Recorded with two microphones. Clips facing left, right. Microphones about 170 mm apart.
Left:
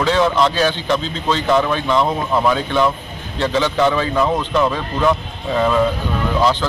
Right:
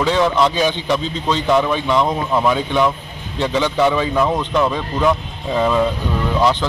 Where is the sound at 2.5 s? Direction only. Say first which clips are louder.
Even; 15° right (ahead or behind).